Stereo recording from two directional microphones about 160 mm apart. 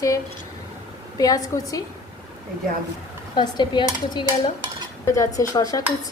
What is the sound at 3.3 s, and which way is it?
Dishes, 30° left (ahead or behind).